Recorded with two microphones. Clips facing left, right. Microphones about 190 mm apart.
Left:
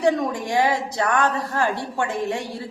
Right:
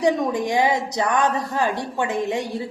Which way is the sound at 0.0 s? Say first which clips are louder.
Right 1 dB; 15° right (ahead or behind).